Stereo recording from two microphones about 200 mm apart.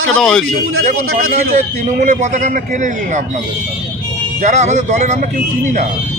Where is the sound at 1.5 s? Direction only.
35° right (ahead or behind).